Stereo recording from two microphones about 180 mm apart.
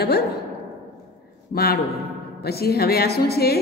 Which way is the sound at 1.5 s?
60° left (ahead or behind).